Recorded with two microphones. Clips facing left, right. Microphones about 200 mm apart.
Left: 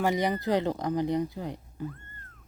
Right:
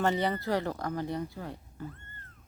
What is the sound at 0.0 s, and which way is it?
Speech, 15° left (ahead or behind).